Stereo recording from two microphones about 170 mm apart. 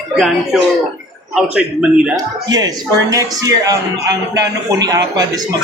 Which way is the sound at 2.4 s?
25° right (ahead or behind).